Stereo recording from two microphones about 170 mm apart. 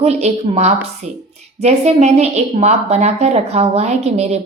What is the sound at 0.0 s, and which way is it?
A woman's voice, 40° right (ahead or behind).